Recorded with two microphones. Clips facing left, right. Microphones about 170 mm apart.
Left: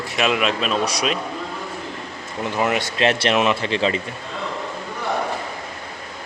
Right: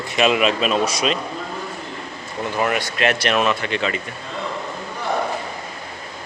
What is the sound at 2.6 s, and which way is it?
Speech, 25° left (ahead or behind).